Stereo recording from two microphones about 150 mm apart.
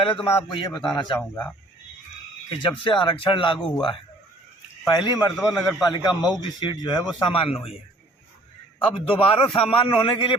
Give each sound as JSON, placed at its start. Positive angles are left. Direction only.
{"t": 0.0, "sound": "a man's voice", "side_deg": 35}
{"t": 2.6, "sound": "speech", "side_deg": 35}
{"t": 4.9, "sound": "a man's voice", "side_deg": 30}
{"t": 5.4, "sound": "a man's voice", "side_deg": 0}
{"t": 5.9, "sound": "a man's voice", "side_deg": 30}
{"t": 8.8, "sound": "speech", "side_deg": 40}